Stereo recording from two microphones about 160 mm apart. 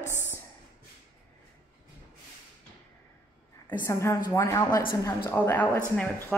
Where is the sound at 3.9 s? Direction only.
20° left (ahead or behind).